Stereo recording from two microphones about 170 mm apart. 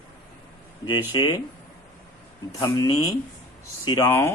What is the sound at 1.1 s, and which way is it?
Speech, 25° left (ahead or behind).